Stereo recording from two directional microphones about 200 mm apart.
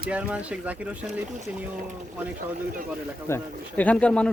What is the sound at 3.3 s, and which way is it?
Speech, 10° left (ahead or behind).